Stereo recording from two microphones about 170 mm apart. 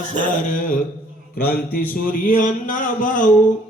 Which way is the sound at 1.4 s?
60° left (ahead or behind).